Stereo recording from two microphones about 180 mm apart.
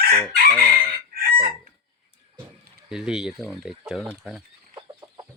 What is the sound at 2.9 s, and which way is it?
Speech, 5° right (ahead or behind).